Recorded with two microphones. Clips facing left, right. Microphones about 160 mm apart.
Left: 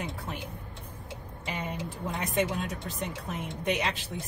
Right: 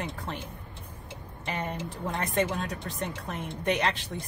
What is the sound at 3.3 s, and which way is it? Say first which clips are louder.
Speech: right 1 dB; 60° right (ahead or behind).